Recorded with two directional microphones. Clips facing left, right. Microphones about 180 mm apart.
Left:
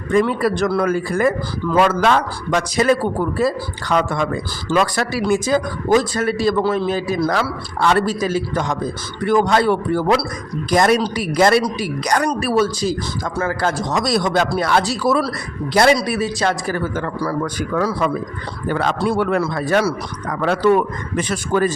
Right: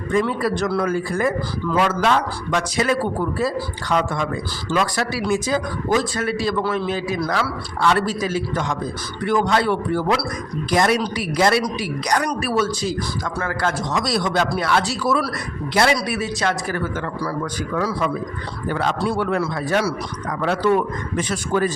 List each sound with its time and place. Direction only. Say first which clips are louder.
0.1 s a man's voice: left 4 dB; 60° left (ahead or behind); by 3.0 s 40° left (ahead or behind)
3.3 s a man's voice: left 3 dB; 60° left (ahead or behind)
4.7 s a man's voice: left 3 dB; 50° left (ahead or behind)
17.2 s a man's voice: left 3 dB; 50° left (ahead or behind)
21.2 s a man's voice: left 3 dB; 60° left (ahead or behind)